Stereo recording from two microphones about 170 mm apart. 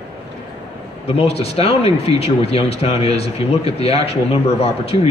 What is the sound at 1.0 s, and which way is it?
Speech, 35° left (ahead or behind).